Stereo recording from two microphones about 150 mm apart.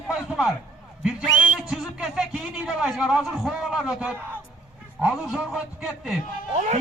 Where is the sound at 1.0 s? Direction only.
5° right (ahead or behind).